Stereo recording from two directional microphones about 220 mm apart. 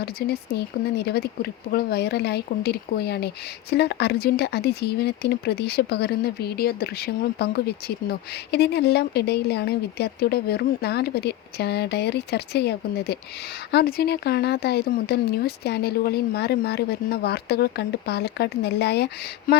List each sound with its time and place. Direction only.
0.0 s speech: 45° left (ahead or behind)